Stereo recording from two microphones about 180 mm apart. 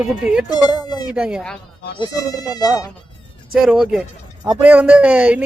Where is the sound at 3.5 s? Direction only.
5° right (ahead or behind).